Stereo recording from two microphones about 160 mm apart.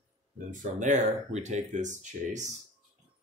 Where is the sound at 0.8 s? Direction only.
45° right (ahead or behind).